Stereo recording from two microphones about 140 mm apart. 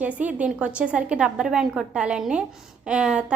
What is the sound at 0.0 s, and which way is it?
A woman's voice, 10° right (ahead or behind).